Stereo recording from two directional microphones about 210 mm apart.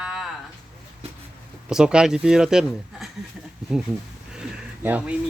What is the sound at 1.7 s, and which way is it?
Speech, 5° right (ahead or behind).